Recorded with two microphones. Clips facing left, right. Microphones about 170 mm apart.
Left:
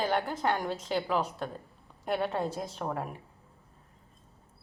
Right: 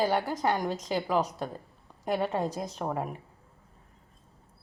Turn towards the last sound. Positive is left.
turn(degrees=-5)  # may be behind; listen again after turning